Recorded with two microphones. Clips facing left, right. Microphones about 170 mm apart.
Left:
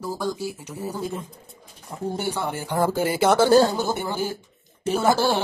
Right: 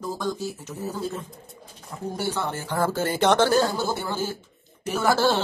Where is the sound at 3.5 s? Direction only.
30° left (ahead or behind).